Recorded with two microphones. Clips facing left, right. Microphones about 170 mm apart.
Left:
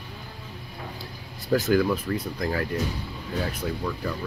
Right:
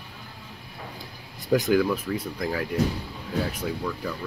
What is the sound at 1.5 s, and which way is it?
Speech, 15° right (ahead or behind).